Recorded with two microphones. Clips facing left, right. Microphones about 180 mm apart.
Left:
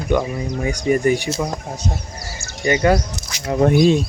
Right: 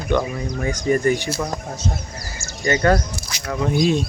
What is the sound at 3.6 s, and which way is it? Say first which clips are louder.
Speech: left 6 dB; 55° left (ahead or behind).